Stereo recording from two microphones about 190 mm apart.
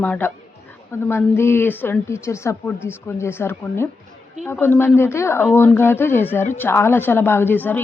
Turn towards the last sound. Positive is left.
turn(degrees=10)  # may be behind; listen again after turning